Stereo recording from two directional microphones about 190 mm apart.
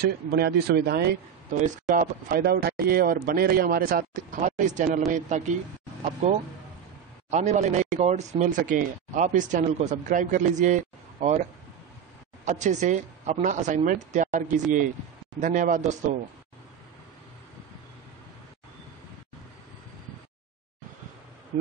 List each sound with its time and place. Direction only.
0.0 s speech: 55° right (ahead or behind); by 5.5 s 40° right (ahead or behind)
7.2 s speech: 35° right (ahead or behind)
12.4 s speech: 40° right (ahead or behind)